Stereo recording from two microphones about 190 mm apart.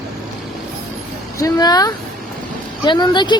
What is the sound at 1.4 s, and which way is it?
Speech, 20° left (ahead or behind).